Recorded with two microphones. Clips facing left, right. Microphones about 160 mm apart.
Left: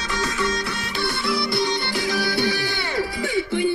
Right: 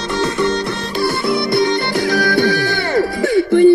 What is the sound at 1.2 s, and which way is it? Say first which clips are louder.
Music: right 7 dB; 55° right (ahead or behind).